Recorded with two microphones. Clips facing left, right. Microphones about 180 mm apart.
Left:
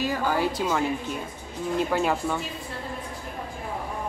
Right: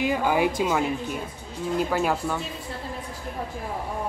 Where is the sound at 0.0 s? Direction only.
15° right (ahead or behind).